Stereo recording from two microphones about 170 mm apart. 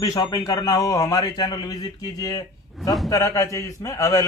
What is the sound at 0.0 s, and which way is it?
A man's voice, 20° left (ahead or behind).